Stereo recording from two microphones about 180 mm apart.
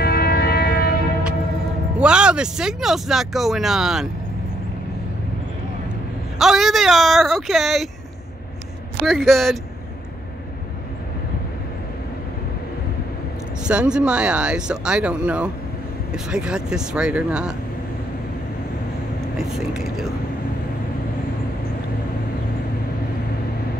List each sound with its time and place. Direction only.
0.0 s train: 60° left (ahead or behind)
2.0 s speech: 5° right (ahead or behind)
6.3 s speech: centre (ahead or behind)
9.0 s speech: centre (ahead or behind)
13.7 s speech: 5° right (ahead or behind)
19.3 s speech: centre (ahead or behind)